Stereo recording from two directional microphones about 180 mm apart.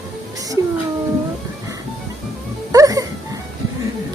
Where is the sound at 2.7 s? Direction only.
20° right (ahead or behind).